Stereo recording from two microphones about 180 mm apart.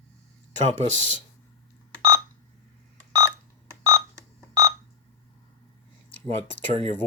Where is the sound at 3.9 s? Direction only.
20° right (ahead or behind).